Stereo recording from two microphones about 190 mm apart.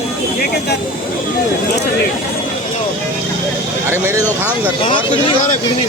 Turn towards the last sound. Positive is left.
turn(degrees=-10)  # may be behind; listen again after turning